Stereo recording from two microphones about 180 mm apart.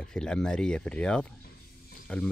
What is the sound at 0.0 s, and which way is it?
Speech, 5° left (ahead or behind).